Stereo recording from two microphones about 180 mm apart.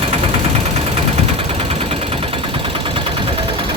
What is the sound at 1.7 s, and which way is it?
Sewing machine, 30° right (ahead or behind).